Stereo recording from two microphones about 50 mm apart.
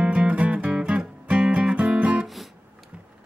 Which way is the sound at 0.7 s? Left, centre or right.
Centre.